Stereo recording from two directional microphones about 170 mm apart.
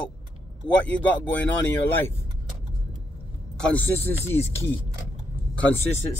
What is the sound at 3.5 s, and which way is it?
Speech, 5° left (ahead or behind).